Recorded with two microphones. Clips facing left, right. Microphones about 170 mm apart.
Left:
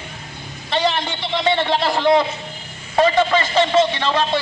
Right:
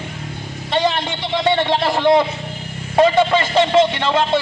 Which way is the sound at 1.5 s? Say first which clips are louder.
Right 2 dB; 20° right (ahead or behind).